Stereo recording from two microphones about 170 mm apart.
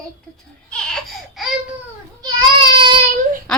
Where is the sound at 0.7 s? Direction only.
5° left (ahead or behind).